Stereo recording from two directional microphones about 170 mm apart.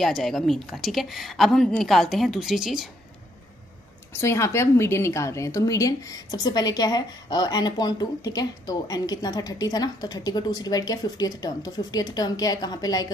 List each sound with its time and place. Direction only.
0.0 s a woman's voice: centre (ahead or behind)
4.1 s a woman's voice: 15° left (ahead or behind)